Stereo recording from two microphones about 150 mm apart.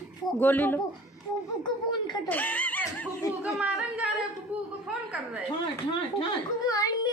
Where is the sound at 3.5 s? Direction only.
5° right (ahead or behind).